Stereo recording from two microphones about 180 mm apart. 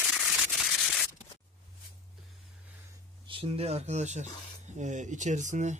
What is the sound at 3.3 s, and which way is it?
Speech, 30° right (ahead or behind).